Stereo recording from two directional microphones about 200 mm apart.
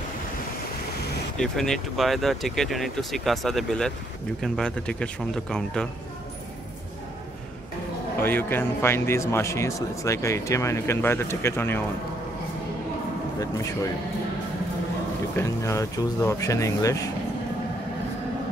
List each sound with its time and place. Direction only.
1.4 s speech: centre (ahead or behind)
8.2 s a man's voice: 10° left (ahead or behind)
15.3 s a man's voice: 15° left (ahead or behind)